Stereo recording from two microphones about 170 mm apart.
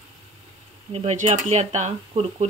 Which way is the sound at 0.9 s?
40° right (ahead or behind).